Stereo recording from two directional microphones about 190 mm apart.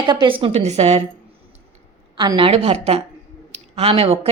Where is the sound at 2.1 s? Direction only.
25° right (ahead or behind).